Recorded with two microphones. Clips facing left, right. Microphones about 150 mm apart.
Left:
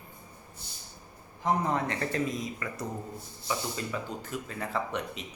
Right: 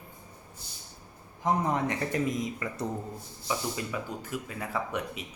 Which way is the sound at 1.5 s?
15° right (ahead or behind).